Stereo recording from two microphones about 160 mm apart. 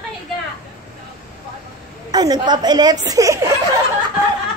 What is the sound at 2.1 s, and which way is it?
A woman's voice, 25° right (ahead or behind).